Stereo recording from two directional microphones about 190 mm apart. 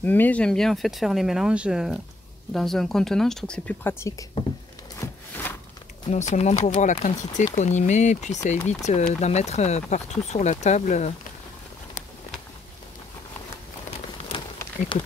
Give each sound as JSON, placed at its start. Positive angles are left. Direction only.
{"t": 0.0, "sound": "speech", "side_deg": 10}
{"t": 4.9, "sound": "a sound", "side_deg": 15}
{"t": 6.0, "sound": "speech", "side_deg": 35}
{"t": 14.9, "sound": "speech", "side_deg": 25}